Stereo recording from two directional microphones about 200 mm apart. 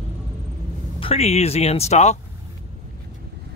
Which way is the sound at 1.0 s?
30° left (ahead or behind).